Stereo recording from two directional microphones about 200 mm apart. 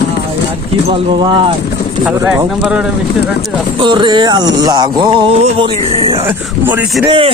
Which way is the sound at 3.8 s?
25° right (ahead or behind).